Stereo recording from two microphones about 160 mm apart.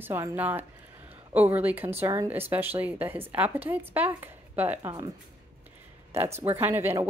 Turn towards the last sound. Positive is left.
turn(degrees=-15)  # may be behind; listen again after turning